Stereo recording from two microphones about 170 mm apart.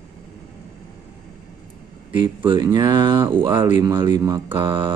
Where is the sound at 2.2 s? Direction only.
30° right (ahead or behind).